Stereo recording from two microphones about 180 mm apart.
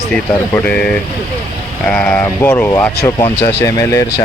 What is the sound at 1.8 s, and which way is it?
Speech, 10° left (ahead or behind).